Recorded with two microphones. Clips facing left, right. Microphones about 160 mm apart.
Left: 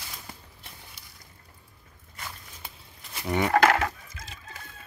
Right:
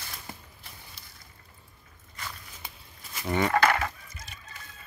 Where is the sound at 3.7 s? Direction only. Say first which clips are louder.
Left 3 dB; 90° left.